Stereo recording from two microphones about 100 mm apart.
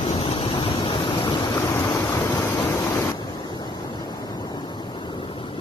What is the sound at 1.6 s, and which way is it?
Vehicle, 30° left (ahead or behind).